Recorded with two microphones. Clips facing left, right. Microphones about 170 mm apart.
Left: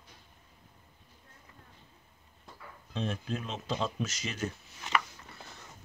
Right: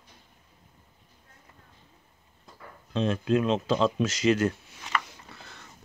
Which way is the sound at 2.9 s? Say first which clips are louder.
Right 10 dB; 90° right.